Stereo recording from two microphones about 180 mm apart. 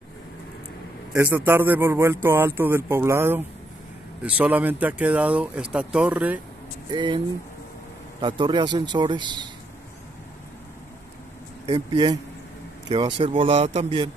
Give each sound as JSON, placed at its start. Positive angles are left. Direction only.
{"t": 1.1, "sound": "speech", "side_deg": -10}
{"t": 6.9, "sound": "a man's voice", "side_deg": -25}
{"t": 8.2, "sound": "a man's voice", "side_deg": -25}
{"t": 11.6, "sound": "a man's voice", "side_deg": -25}